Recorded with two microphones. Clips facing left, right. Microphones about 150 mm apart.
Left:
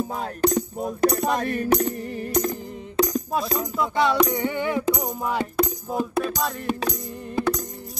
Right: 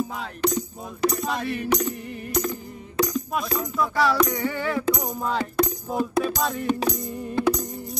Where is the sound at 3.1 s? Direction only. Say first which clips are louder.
Left 2 dB; 30° left (ahead or behind).